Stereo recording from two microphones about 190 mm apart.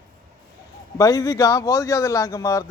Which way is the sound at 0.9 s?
20° left (ahead or behind).